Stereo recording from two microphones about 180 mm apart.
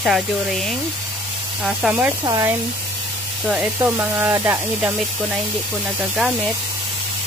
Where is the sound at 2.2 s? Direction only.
20° right (ahead or behind).